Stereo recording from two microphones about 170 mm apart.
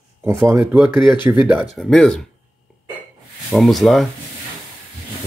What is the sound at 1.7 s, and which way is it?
Speech, 5° left (ahead or behind).